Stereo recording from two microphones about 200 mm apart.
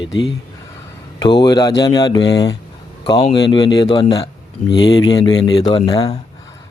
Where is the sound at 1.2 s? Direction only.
20° left (ahead or behind).